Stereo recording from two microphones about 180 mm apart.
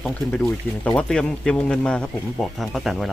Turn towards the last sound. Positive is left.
turn(degrees=0)  # may be behind; listen again after turning